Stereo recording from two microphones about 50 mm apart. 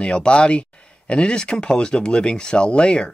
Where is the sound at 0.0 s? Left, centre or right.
Left.